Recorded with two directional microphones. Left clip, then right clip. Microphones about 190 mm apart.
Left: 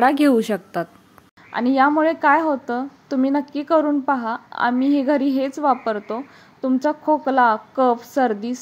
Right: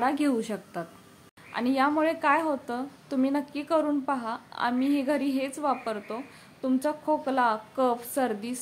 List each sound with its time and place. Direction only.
0.0 s a woman's voice: 30° left (ahead or behind)